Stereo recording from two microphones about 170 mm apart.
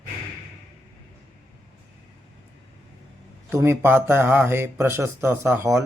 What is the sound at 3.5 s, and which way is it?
Speech, 15° right (ahead or behind).